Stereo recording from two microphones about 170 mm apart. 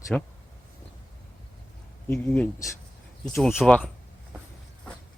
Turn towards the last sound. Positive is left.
turn(degrees=5)  # may be behind; listen again after turning